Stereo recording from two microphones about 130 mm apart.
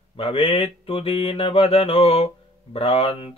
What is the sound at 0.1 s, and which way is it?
Mantra, 45° left (ahead or behind).